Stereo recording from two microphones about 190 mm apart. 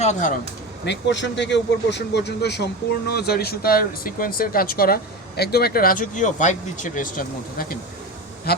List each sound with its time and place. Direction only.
0.0 s speech: 40° left (ahead or behind)
0.9 s speech: 70° left (ahead or behind)